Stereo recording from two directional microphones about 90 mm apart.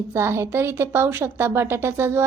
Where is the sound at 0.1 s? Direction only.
30° right (ahead or behind).